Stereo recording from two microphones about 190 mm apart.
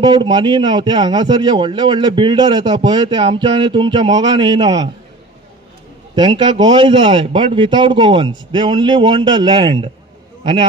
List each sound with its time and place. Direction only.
0.0 s a man's voice: 25° right (ahead or behind)
6.1 s a man's voice: 25° right (ahead or behind)